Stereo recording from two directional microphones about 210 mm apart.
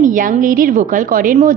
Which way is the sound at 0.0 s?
40° right (ahead or behind).